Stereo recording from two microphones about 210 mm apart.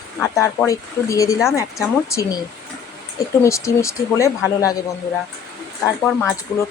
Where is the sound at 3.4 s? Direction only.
15° left (ahead or behind).